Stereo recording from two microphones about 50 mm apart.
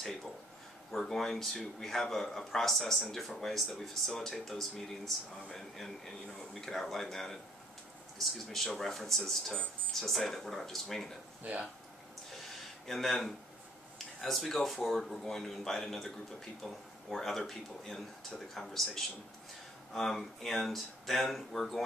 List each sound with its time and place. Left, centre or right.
0.9 s speech: centre
12.8 s speech: centre